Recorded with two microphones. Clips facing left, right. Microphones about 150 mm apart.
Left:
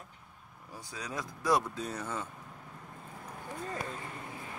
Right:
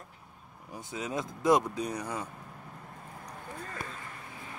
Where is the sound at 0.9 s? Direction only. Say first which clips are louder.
Right 5 dB; 20° right (ahead or behind).